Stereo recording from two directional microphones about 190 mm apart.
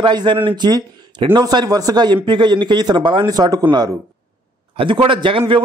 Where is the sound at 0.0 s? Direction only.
25° right (ahead or behind).